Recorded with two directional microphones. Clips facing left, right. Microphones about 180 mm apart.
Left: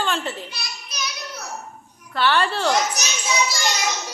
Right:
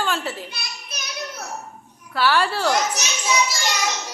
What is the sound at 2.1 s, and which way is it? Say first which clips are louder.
Speech: even; 5° right (ahead or behind).